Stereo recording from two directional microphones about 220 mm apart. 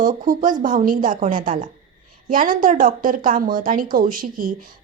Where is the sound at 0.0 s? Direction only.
35° right (ahead or behind).